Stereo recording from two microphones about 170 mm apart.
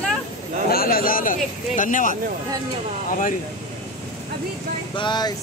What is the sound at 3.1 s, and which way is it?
Speech, 50° left (ahead or behind).